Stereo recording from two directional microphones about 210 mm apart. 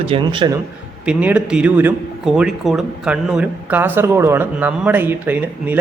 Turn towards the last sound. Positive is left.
turn(degrees=-10)  # may be behind; listen again after turning